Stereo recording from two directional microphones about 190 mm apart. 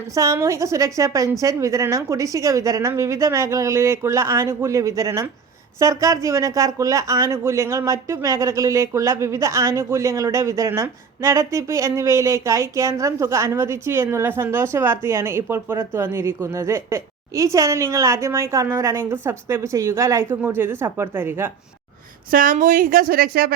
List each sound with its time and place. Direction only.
0.2 s speech: 15° right (ahead or behind)
22.3 s speech: 45° right (ahead or behind)